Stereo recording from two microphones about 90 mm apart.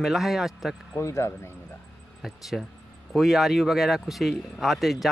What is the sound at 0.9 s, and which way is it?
Speech, 30° left (ahead or behind).